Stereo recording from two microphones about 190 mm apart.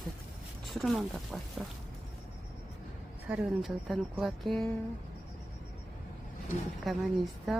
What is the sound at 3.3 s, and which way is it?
Speech, 5° right (ahead or behind).